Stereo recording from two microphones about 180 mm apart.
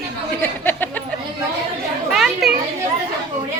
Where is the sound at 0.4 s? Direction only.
10° left (ahead or behind).